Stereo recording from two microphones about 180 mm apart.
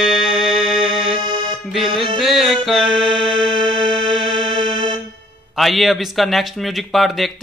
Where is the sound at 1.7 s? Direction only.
Centre (ahead or behind).